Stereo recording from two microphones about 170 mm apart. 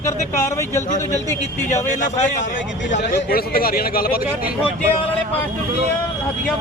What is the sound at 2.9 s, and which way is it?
A man's voice, 60° left (ahead or behind).